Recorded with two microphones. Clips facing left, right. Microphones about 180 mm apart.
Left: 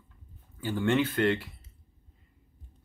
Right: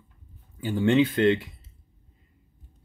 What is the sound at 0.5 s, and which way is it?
Speech, 15° right (ahead or behind).